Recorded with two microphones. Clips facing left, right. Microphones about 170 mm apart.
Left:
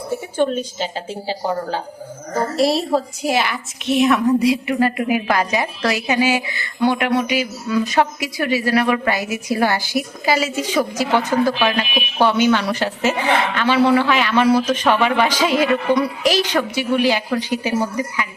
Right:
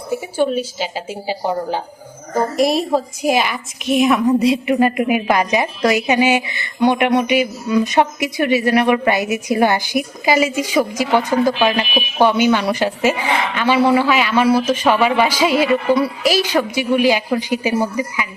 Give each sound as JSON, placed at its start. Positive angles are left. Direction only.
{"t": 0.3, "sound": "a woman's voice", "side_deg": -10}